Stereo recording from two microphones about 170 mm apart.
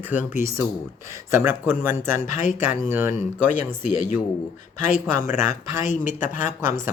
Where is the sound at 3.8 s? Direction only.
45° left (ahead or behind).